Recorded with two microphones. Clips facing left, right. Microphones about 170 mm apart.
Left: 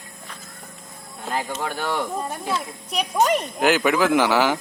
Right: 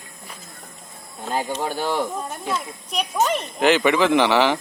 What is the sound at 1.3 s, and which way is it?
Speech, 15° right (ahead or behind).